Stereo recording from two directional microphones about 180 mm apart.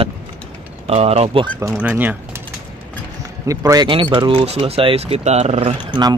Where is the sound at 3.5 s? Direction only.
20° right (ahead or behind); by 5.7 s 40° right (ahead or behind).